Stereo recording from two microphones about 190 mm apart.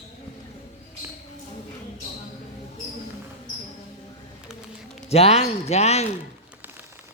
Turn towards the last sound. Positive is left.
turn(degrees=35)  # may be behind; listen again after turning